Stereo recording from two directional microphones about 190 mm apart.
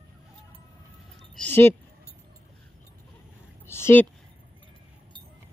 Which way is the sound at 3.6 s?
15° left (ahead or behind).